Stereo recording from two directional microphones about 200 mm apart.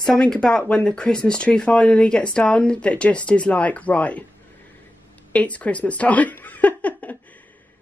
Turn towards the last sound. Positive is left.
turn(degrees=5)  # may be behind; listen again after turning